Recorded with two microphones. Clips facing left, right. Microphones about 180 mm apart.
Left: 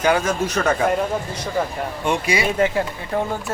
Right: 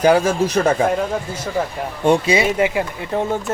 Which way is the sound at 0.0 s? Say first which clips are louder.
Right 5 dB; 35° right (ahead or behind).